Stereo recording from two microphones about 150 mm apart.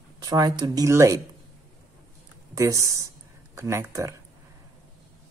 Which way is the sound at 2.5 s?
20° right (ahead or behind).